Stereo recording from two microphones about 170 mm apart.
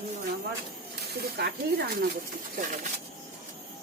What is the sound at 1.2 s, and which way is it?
Speech, 70° right (ahead or behind).